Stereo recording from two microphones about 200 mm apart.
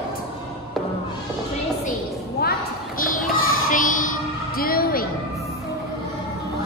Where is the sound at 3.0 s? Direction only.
45° left (ahead or behind).